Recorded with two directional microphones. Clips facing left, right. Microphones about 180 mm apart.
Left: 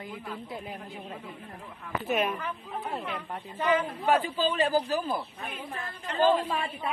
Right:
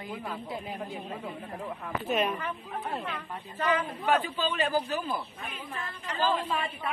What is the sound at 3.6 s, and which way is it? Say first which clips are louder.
A man's voice: left 2 dB; 25° left (ahead or behind).